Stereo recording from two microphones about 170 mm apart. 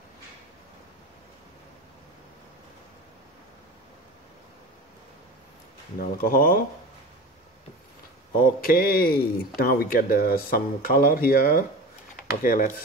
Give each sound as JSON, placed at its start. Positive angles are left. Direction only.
{"t": 5.9, "sound": "a man's voice", "side_deg": 60}
{"t": 8.4, "sound": "a man's voice", "side_deg": 60}